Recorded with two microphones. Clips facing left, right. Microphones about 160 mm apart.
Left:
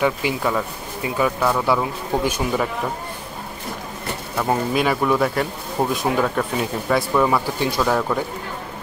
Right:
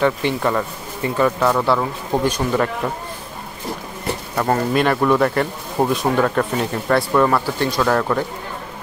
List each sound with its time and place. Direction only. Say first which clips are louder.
0.0 s speech: right 2 dB; 5° left (ahead or behind)
4.4 s speech: right 2 dB; 5° left (ahead or behind)